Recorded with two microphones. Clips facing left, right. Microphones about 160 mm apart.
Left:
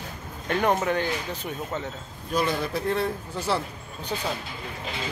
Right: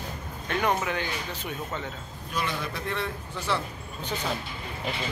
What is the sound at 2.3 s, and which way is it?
Speech, 35° left (ahead or behind).